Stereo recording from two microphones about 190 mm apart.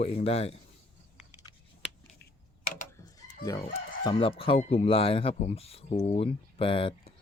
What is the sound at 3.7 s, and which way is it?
Speech, 25° left (ahead or behind).